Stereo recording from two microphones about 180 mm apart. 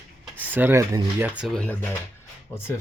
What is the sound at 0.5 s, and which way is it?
Speech, 10° right (ahead or behind).